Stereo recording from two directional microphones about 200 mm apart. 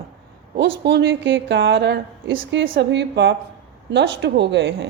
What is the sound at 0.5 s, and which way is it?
A woman's voice, 60° right (ahead or behind).